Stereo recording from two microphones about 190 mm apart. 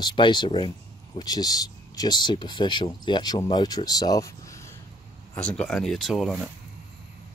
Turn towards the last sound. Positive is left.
turn(degrees=0)  # may be behind; listen again after turning